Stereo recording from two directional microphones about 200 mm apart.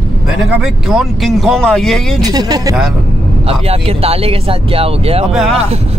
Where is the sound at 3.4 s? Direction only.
30° right (ahead or behind).